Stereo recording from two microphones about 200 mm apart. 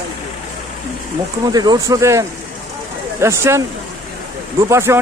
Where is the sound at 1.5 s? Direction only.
20° right (ahead or behind).